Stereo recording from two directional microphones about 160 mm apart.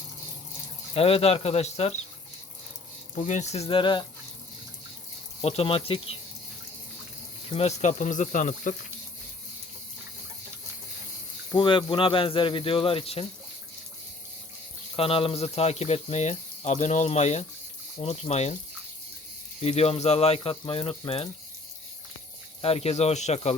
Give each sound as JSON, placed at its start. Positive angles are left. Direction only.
{"t": 0.9, "sound": "speech", "side_deg": 35}
{"t": 3.2, "sound": "speech", "side_deg": 50}
{"t": 5.4, "sound": "speech", "side_deg": 35}
{"t": 7.5, "sound": "speech", "side_deg": 45}
{"t": 11.5, "sound": "speech", "side_deg": 30}
{"t": 14.9, "sound": "speech", "side_deg": 35}
{"t": 19.6, "sound": "speech", "side_deg": 40}
{"t": 22.6, "sound": "speech", "side_deg": 40}